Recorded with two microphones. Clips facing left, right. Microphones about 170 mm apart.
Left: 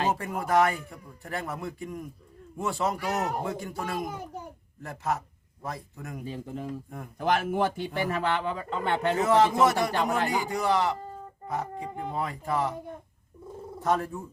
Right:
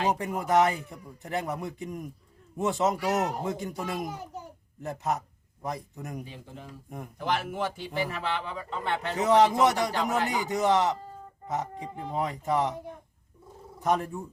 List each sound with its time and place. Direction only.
0.1 s a man's voice: 20° right (ahead or behind)
6.2 s speech: 45° left (ahead or behind)
9.2 s a man's voice: 20° right (ahead or behind)
13.8 s speech: 15° right (ahead or behind)